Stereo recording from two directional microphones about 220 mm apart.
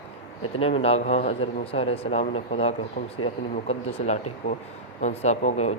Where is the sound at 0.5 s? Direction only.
25° left (ahead or behind).